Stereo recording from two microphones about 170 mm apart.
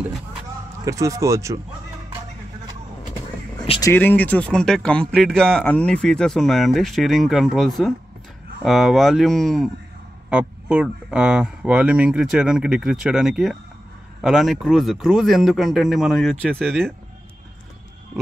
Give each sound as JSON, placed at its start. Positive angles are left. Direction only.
{"t": 0.8, "sound": "speech", "side_deg": -20}
{"t": 3.8, "sound": "speech", "side_deg": 10}